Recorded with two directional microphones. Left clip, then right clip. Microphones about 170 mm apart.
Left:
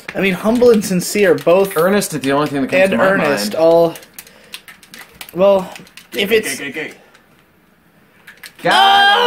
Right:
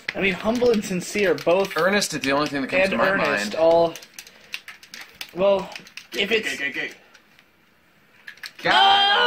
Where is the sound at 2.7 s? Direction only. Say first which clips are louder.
Left 7 dB; 5° left (ahead or behind).